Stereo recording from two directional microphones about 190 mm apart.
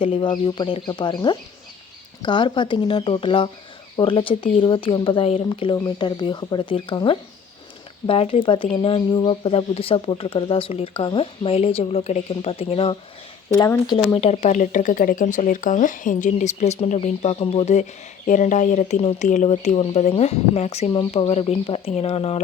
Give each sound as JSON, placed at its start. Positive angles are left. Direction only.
{"t": 0.0, "sound": "speech", "side_deg": 25}
{"t": 13.6, "sound": "speech", "side_deg": 15}
{"t": 13.9, "sound": "speech", "side_deg": 30}